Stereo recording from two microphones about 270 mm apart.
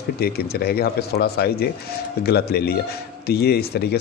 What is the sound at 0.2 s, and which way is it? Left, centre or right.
Speech, left.